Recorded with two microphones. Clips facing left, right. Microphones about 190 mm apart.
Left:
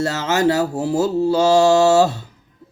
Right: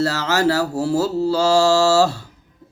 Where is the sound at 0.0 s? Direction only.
20° left (ahead or behind).